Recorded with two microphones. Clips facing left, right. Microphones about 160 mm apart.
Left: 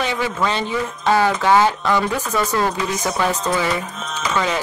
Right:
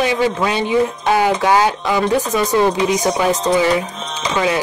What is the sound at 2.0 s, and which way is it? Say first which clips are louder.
Speech: right 6 dB; 35° right (ahead or behind).